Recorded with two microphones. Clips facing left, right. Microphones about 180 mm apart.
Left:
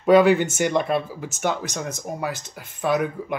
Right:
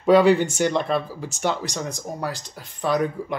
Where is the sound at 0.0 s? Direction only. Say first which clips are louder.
Even; centre (ahead or behind).